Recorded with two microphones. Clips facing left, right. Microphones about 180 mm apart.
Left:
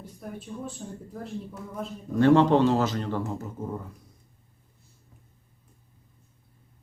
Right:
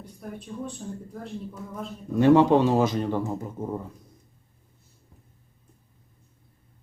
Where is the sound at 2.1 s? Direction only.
10° right (ahead or behind).